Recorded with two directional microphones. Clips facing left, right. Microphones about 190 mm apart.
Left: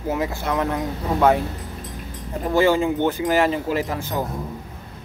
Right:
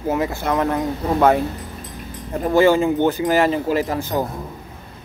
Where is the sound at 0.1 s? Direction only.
50° right (ahead or behind).